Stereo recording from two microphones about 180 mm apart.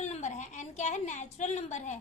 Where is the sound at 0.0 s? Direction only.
40° left (ahead or behind).